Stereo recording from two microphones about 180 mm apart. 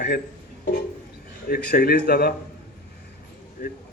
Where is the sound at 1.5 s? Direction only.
55° left (ahead or behind).